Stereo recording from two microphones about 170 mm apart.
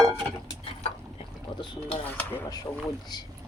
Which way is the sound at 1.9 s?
10° left (ahead or behind).